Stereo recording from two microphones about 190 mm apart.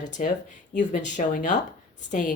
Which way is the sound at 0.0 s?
40° left (ahead or behind).